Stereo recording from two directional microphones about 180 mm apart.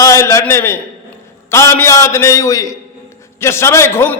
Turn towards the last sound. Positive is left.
turn(degrees=15)  # may be behind; listen again after turning